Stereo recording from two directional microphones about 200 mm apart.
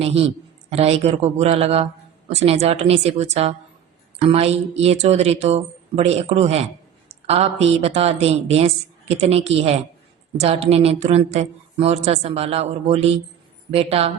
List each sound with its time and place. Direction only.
0.0 s a woman's voice: 30° right (ahead or behind)